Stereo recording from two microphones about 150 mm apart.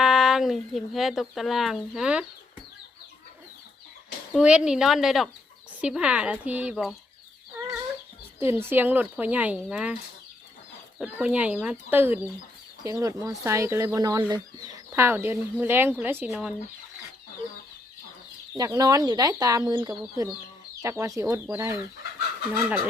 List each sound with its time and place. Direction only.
0.0 s speech: 5° right (ahead or behind)
4.4 s speech: 5° right (ahead or behind)
8.4 s speech: 15° right (ahead or behind)
18.5 s speech: 25° right (ahead or behind)